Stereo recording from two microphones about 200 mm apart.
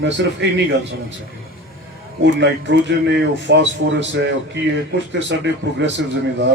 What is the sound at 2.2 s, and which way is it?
Speech, 60° right (ahead or behind).